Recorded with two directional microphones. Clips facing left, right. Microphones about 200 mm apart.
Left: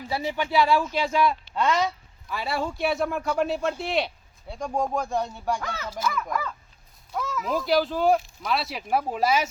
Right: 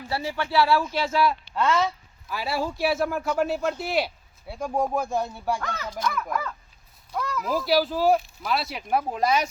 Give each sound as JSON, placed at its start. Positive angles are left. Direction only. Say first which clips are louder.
{"t": 0.1, "sound": "speech", "louder": "left 1 dB", "side_deg": 15}
{"t": 2.3, "sound": "speech", "louder": "right 1 dB", "side_deg": -5}